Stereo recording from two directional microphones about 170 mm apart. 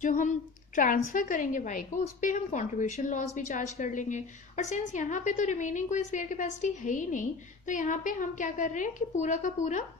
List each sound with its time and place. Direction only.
0.0 s a woman's voice: 45° left (ahead or behind)